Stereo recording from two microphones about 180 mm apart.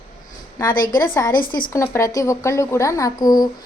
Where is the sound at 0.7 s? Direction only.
50° left (ahead or behind).